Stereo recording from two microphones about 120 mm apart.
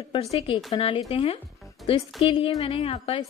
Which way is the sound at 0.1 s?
55° left (ahead or behind).